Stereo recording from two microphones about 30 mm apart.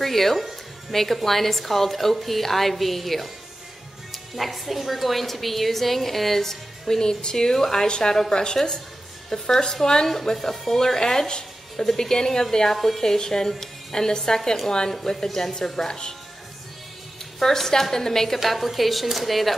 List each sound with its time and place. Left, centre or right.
0.0 s a woman's voice: centre; by 10.0 s left
10.0 s a woman's voice: centre
11.7 s a woman's voice: centre
17.4 s speech: centre
18.4 s a woman's voice: centre